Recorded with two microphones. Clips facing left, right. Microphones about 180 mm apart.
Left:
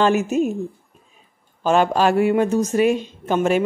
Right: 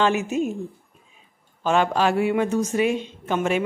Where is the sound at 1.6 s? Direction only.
40° left (ahead or behind).